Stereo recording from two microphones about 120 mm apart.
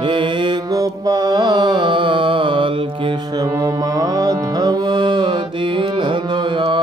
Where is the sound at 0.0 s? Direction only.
40° right (ahead or behind).